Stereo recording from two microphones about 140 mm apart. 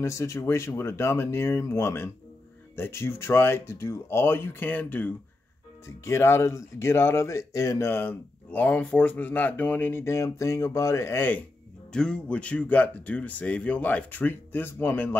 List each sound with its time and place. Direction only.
0.0 s speech: 20° left (ahead or behind)